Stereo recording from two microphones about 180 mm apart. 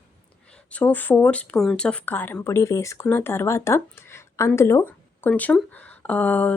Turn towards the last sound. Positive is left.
turn(degrees=10)  # may be behind; listen again after turning